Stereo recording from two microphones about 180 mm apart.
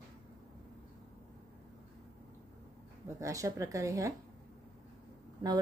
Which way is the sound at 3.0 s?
15° right (ahead or behind).